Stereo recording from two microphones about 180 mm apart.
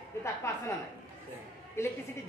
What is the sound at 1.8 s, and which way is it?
Speech, 15° left (ahead or behind).